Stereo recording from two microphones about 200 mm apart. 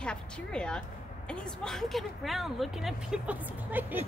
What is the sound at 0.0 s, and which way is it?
A woman's voice, 5° left (ahead or behind).